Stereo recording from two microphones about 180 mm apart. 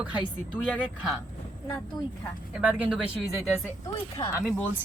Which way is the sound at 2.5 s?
5° right (ahead or behind).